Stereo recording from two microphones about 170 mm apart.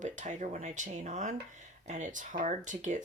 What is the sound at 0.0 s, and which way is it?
Speech, 45° right (ahead or behind).